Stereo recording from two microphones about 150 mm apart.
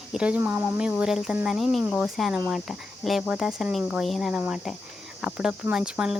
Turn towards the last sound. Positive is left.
turn(degrees=-5)  # may be behind; listen again after turning